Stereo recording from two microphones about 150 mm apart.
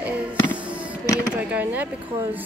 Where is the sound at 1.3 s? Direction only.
10° right (ahead or behind).